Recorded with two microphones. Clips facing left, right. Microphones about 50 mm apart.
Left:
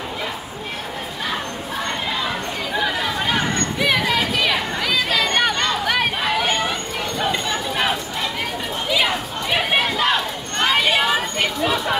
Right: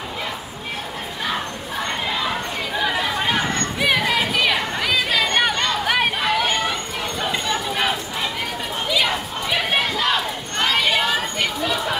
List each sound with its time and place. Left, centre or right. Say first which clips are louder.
2.7 s chatter: even; centre
7.2 s a sound: left 1 dB; centre
10.6 s chatter: left 2 dB; centre